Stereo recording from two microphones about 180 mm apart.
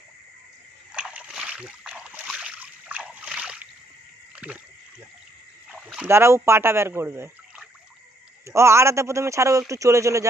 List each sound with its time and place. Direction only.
0.9 s splash: 5° right (ahead or behind)
4.4 s rowboat: 5° right (ahead or behind)
5.6 s a man's voice: 5° right (ahead or behind)